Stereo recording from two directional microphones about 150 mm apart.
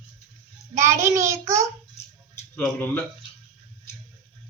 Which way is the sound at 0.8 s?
20° right (ahead or behind).